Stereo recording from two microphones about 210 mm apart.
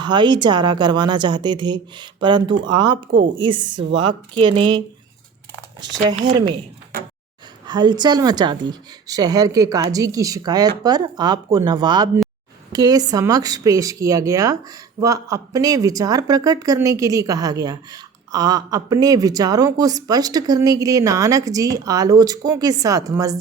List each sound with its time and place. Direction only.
0.0 s a woman's voice: 20° right (ahead or behind)
5.8 s a woman's voice: 20° right (ahead or behind)
7.7 s a woman's voice: 20° right (ahead or behind)